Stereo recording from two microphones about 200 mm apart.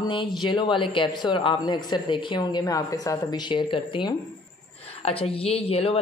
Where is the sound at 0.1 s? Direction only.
25° left (ahead or behind).